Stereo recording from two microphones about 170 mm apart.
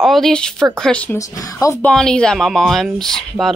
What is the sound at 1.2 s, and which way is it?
Speech, 20° left (ahead or behind).